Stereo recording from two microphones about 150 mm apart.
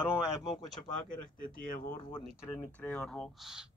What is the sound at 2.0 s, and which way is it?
Speech, 30° left (ahead or behind).